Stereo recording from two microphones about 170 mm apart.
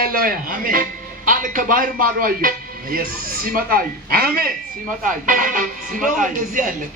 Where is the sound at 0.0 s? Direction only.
60° right (ahead or behind).